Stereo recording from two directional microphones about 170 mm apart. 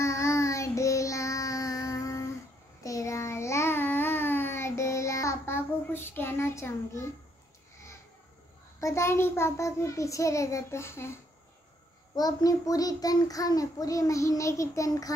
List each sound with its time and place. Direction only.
0.0 s child singing: 15° left (ahead or behind)
2.8 s babbling: 20° left (ahead or behind)
8.7 s a child's voice: 15° left (ahead or behind)
12.2 s a child's voice: 20° left (ahead or behind)